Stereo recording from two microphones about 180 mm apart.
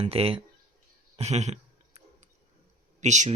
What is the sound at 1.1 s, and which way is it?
Clicking, 40° right (ahead or behind).